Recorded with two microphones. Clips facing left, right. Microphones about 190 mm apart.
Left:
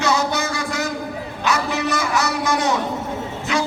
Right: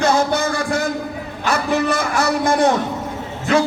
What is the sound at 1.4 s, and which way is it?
Speech, 55° right (ahead or behind).